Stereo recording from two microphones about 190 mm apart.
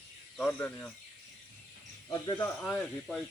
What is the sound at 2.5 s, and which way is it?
Speech, 5° left (ahead or behind).